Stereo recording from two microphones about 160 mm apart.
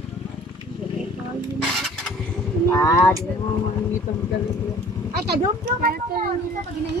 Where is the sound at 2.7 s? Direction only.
20° left (ahead or behind).